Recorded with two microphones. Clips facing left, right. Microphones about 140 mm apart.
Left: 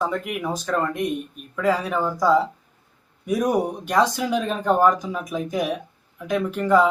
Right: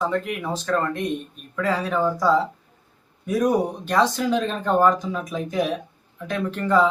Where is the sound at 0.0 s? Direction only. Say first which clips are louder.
Right 1 dB; 5° left (ahead or behind).